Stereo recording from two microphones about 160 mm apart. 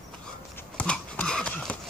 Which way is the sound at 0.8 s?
5° left (ahead or behind).